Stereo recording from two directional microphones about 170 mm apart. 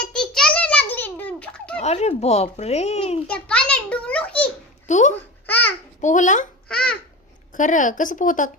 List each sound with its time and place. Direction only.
0.1 s a sound: 5° left (ahead or behind)
1.8 s speech: 40° left (ahead or behind)
3.2 s a child's voice: 5° left (ahead or behind)
4.9 s speech: 45° left (ahead or behind)
5.5 s babbling: 10° left (ahead or behind)
6.0 s speech: 45° left (ahead or behind)
7.5 s speech: 50° left (ahead or behind)